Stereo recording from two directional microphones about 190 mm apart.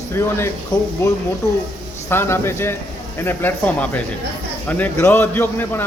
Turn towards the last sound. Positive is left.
turn(degrees=10)  # may be behind; listen again after turning